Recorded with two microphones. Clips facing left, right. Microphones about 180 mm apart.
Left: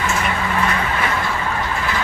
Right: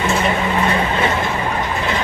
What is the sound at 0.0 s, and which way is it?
Vehicle, 25° right (ahead or behind).